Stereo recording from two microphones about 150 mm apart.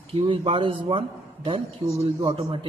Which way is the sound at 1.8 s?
20° right (ahead or behind).